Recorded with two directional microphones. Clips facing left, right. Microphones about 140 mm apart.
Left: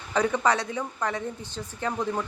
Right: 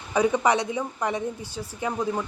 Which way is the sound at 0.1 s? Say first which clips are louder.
Right 2 dB; 15° right (ahead or behind).